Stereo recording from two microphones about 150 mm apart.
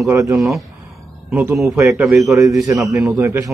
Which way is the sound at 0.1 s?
20° right (ahead or behind).